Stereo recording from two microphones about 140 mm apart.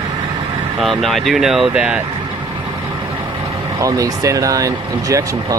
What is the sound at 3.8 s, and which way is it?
Speech, 25° right (ahead or behind).